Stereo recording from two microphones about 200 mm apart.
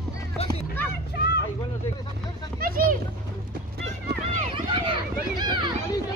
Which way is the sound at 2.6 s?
45° right (ahead or behind).